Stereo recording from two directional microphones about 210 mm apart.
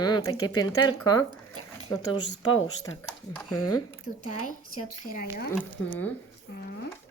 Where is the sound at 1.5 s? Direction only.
90° left.